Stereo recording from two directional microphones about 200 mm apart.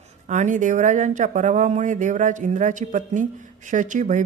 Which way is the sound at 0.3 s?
40° right (ahead or behind).